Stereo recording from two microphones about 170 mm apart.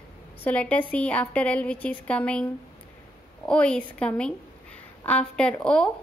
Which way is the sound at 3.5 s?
5° left (ahead or behind).